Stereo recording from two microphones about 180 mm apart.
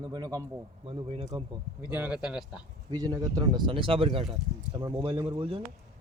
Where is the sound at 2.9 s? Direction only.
20° right (ahead or behind).